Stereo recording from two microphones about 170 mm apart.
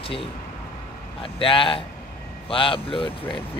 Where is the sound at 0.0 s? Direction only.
35° left (ahead or behind).